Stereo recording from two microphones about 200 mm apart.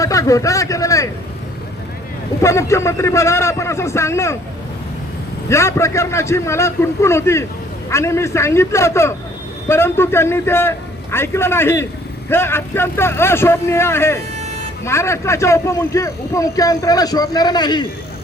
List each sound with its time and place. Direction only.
0.0 s speech: 15° left (ahead or behind)
2.4 s speech: 15° left (ahead or behind)
5.5 s speech: 15° left (ahead or behind)